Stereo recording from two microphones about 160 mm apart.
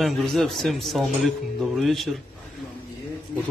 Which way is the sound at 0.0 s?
Centre (ahead or behind).